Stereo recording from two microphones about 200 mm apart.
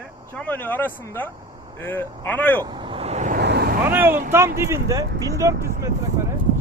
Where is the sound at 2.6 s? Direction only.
25° right (ahead or behind).